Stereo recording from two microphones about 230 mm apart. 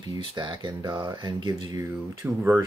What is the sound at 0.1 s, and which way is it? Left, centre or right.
Speech, centre.